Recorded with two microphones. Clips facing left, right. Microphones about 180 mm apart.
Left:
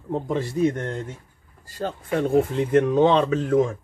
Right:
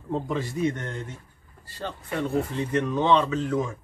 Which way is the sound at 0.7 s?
50° left (ahead or behind).